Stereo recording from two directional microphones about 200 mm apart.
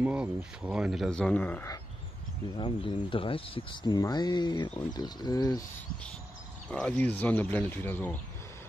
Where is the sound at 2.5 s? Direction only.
20° left (ahead or behind).